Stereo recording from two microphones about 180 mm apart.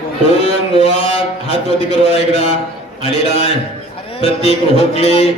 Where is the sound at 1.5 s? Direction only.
35° left (ahead or behind).